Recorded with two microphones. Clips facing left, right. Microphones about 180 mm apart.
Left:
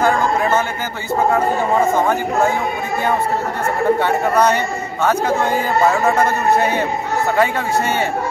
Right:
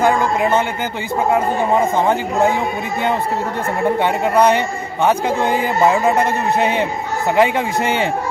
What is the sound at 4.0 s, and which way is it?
A man's voice, 15° right (ahead or behind).